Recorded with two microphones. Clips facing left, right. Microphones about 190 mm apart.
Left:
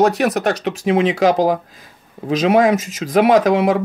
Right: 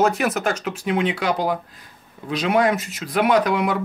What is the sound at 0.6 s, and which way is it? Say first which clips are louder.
Speech: left 6 dB; 85° left.